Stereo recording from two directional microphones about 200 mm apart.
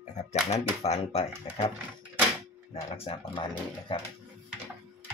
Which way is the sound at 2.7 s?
30° left (ahead or behind).